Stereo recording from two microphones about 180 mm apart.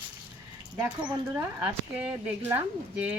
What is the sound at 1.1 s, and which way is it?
A woman's voice, 20° right (ahead or behind).